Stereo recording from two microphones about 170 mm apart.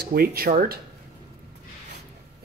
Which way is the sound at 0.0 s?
60° right (ahead or behind).